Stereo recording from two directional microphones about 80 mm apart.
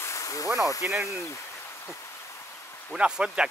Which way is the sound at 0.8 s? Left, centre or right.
Right.